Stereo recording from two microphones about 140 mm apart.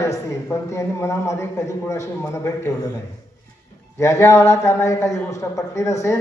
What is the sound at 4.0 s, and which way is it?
Speech, 20° left (ahead or behind).